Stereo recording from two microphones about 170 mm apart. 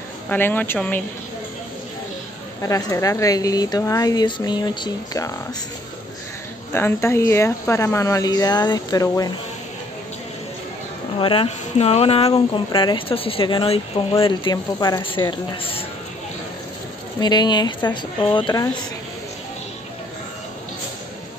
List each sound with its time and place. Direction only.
0.3 s speech: 10° left (ahead or behind)
2.6 s speech: 20° left (ahead or behind)
6.7 s speech: 15° left (ahead or behind)
11.1 s speech: 30° left (ahead or behind)
17.2 s speech: 25° left (ahead or behind)